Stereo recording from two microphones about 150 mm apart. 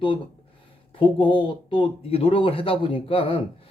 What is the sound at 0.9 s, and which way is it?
Speech, 35° left (ahead or behind).